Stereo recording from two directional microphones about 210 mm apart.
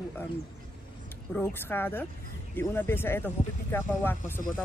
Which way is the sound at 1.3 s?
10° left (ahead or behind).